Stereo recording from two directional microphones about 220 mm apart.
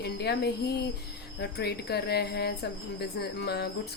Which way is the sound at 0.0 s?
50° left (ahead or behind).